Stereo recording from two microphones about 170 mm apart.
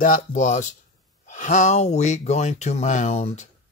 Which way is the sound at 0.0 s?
50° left (ahead or behind).